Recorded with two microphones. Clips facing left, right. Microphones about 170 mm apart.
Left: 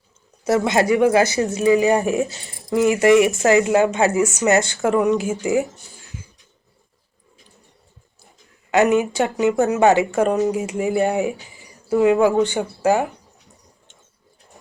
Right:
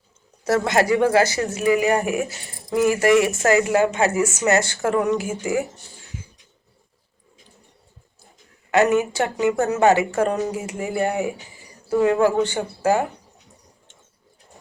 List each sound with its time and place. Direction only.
0.4 s speech: 20° left (ahead or behind)
8.7 s speech: 15° left (ahead or behind)